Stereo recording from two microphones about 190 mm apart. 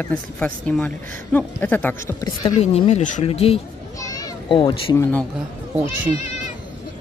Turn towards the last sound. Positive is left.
turn(degrees=-10)  # may be behind; listen again after turning